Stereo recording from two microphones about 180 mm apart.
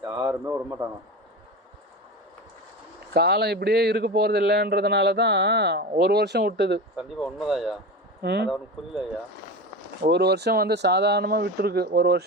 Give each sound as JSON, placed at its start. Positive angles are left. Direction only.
{"t": 0.0, "sound": "a man's voice", "side_deg": -15}
{"t": 3.1, "sound": "speech", "side_deg": -65}
{"t": 6.9, "sound": "speech", "side_deg": 0}
{"t": 8.2, "sound": "speech", "side_deg": -65}
{"t": 10.0, "sound": "speech", "side_deg": -65}